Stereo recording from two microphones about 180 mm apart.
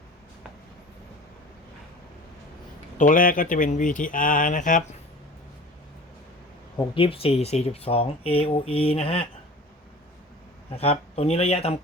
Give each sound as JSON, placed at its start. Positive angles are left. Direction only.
{"t": 3.0, "sound": "speech", "side_deg": 50}
{"t": 6.9, "sound": "speech", "side_deg": 30}
{"t": 10.8, "sound": "speech", "side_deg": 35}